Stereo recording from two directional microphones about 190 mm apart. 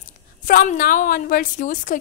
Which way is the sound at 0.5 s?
45° left (ahead or behind).